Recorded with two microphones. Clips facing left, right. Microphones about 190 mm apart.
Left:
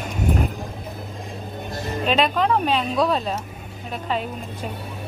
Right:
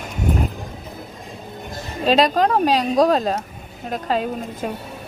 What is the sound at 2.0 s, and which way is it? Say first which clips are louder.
A woman's voice: right 4 dB; 40° right (ahead or behind).